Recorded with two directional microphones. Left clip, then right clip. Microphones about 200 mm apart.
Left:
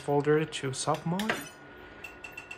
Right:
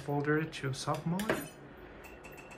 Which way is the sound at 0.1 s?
15° left (ahead or behind).